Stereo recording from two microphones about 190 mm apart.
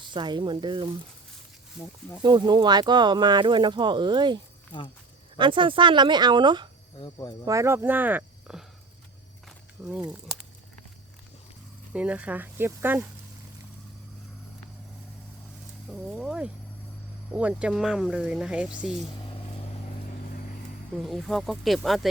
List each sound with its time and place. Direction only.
0.0 s speech: 25° right (ahead or behind)
1.8 s speech: 5° right (ahead or behind)
2.2 s speech: 25° right (ahead or behind)
5.4 s speech: 25° right (ahead or behind)
7.0 s speech: 20° left (ahead or behind)
7.4 s speech: 15° right (ahead or behind)
9.8 s speech: 5° right (ahead or behind)
11.9 s speech: 5° right (ahead or behind)
15.9 s speech: 5° right (ahead or behind)
21.0 s speech: centre (ahead or behind)